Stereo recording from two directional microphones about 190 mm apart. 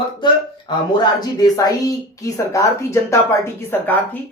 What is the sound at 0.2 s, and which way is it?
A woman's voice, 25° left (ahead or behind).